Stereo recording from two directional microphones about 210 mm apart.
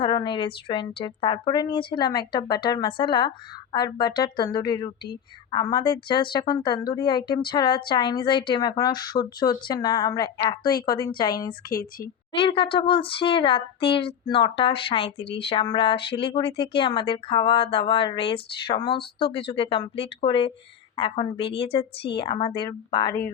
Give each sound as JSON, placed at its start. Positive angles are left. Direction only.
{"t": 0.0, "sound": "a woman's voice", "side_deg": 20}
{"t": 11.7, "sound": "a woman's voice", "side_deg": 45}
{"t": 12.4, "sound": "speech", "side_deg": 25}